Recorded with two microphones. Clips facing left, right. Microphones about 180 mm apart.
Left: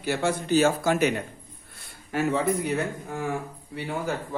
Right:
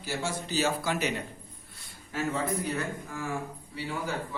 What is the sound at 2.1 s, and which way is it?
A man's voice, 65° left (ahead or behind).